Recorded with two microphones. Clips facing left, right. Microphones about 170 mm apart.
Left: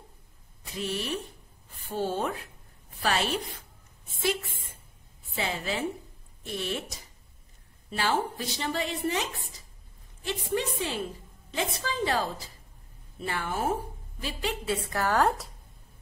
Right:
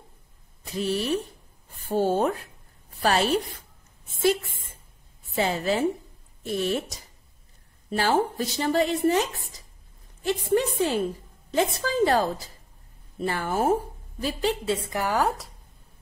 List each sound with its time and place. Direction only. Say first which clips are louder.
0.7 s a woman's voice: right 6 dB; 40° right (ahead or behind)
7.9 s speech: right 5 dB; 40° right (ahead or behind)
14.9 s a woman's voice: left 1 dB; 15° right (ahead or behind)